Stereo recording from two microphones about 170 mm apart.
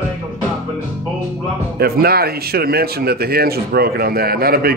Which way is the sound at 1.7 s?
65° right (ahead or behind).